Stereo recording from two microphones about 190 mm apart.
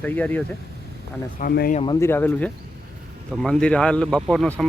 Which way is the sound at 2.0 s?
10° left (ahead or behind).